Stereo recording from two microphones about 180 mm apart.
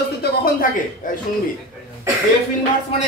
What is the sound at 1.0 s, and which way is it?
Speech, 45° left (ahead or behind).